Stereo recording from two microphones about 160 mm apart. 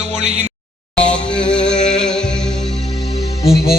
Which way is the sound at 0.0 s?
45° right (ahead or behind).